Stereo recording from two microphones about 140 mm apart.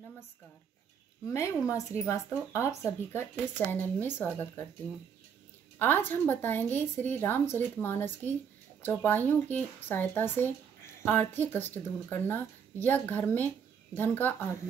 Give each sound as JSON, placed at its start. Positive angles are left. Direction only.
{"t": 1.3, "sound": "speech", "side_deg": 20}
{"t": 5.8, "sound": "a woman's voice", "side_deg": 15}